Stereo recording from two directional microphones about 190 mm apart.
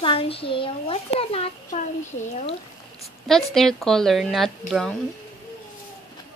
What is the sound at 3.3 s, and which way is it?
A woman's voice, centre (ahead or behind).